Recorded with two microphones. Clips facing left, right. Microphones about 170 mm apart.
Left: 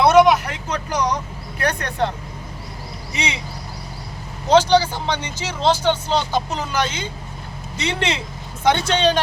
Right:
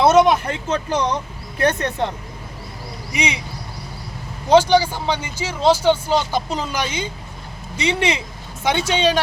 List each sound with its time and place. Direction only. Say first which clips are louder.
0.0 s speech: left 1 dB; 25° right (ahead or behind)
3.1 s speech: right 3 dB; 15° right (ahead or behind)
4.4 s speech: right 1 dB; 10° right (ahead or behind)